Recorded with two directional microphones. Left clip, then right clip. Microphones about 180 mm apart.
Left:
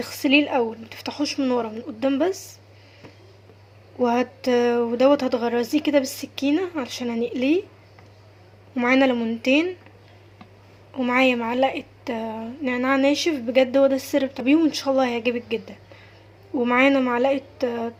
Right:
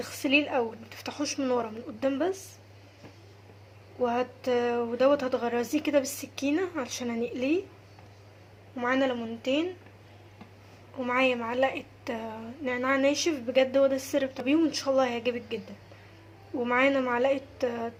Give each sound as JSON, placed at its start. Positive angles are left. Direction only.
{"t": 0.0, "sound": "a woman's voice", "side_deg": 25}
{"t": 3.9, "sound": "a woman's voice", "side_deg": 30}
{"t": 8.7, "sound": "speech", "side_deg": 35}
{"t": 10.9, "sound": "a woman's voice", "side_deg": 30}